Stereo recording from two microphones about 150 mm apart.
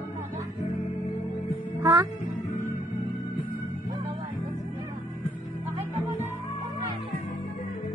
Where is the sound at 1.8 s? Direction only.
25° right (ahead or behind).